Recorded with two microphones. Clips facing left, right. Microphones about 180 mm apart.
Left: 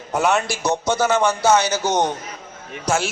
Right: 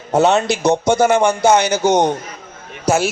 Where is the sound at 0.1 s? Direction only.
25° right (ahead or behind).